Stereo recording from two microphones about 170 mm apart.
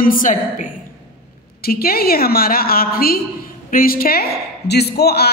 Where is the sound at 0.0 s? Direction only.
55° left (ahead or behind).